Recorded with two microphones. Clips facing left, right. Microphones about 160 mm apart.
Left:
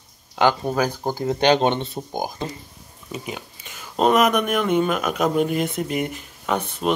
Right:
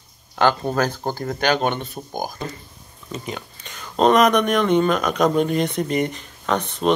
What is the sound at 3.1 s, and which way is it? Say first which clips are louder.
Speech: right 1 dB; 10° left (ahead or behind).